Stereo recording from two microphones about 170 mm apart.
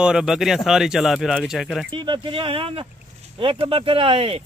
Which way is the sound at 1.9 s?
25° right (ahead or behind).